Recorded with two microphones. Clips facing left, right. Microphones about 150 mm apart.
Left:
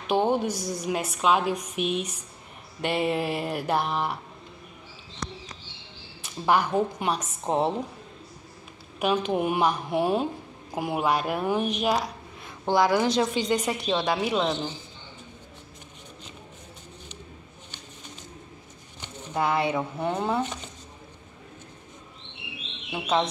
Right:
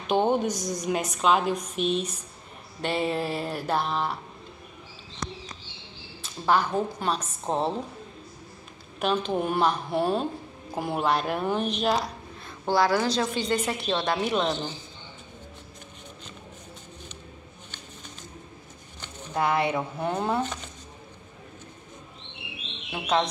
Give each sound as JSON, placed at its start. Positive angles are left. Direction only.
{"t": 0.0, "sound": "a woman's voice", "side_deg": 5}
{"t": 5.2, "sound": "bird", "side_deg": 0}
{"t": 6.2, "sound": "speech", "side_deg": 15}
{"t": 9.0, "sound": "a woman's voice", "side_deg": 10}
{"t": 19.3, "sound": "a woman's voice", "side_deg": 0}
{"t": 22.8, "sound": "a woman's voice", "side_deg": 0}